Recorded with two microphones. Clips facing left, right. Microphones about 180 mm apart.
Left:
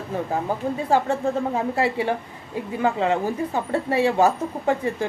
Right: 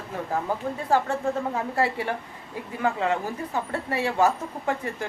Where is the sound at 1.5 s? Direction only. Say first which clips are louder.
Left 3 dB; 20° left (ahead or behind).